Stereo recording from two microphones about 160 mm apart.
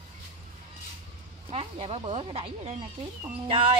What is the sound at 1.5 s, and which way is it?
A woman's voice, 40° right (ahead or behind).